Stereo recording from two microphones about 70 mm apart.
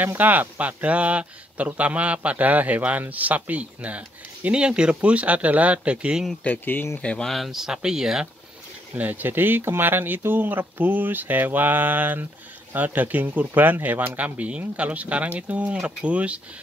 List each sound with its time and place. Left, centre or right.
0.0 s a man's voice: right
6.4 s speech: left
7.0 s speech: centre
7.2 s speech: centre
8.9 s a man's voice: right